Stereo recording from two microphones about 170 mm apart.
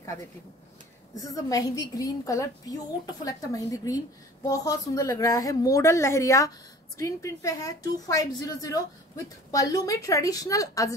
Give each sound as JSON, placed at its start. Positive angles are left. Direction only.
{"t": 1.2, "sound": "a woman's voice", "side_deg": 20}